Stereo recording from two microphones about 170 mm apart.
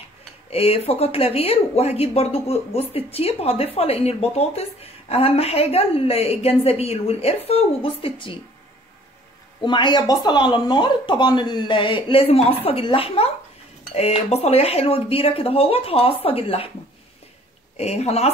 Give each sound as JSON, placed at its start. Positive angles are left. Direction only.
{"t": 0.5, "sound": "speech", "side_deg": 35}
{"t": 9.7, "sound": "speech", "side_deg": 25}
{"t": 17.7, "sound": "speech", "side_deg": 40}